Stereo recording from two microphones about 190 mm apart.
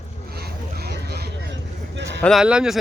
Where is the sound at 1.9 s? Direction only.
70° right (ahead or behind).